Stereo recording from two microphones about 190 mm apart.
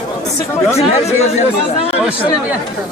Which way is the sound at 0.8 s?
35° left (ahead or behind).